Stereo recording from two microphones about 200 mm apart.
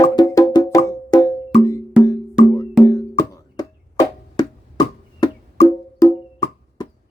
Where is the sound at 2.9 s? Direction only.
15° left (ahead or behind).